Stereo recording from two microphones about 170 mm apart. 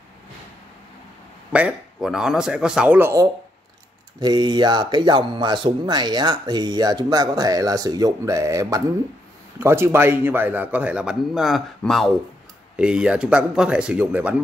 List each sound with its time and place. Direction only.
1.5 s a man's voice: 5° right (ahead or behind)